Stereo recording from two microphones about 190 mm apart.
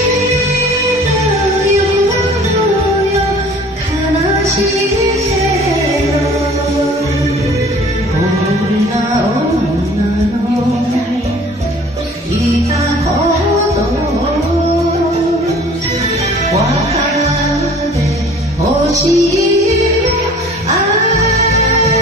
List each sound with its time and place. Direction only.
16.5 s music: 35° right (ahead or behind)
18.9 s music: 15° right (ahead or behind)
21.1 s music: 35° left (ahead or behind)